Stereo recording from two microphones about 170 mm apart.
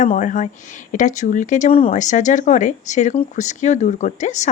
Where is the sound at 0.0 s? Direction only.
50° left (ahead or behind).